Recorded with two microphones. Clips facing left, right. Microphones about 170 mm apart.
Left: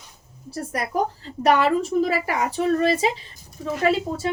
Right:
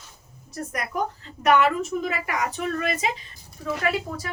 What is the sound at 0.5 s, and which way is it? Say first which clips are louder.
A woman's voice: left 4 dB; 30° left (ahead or behind).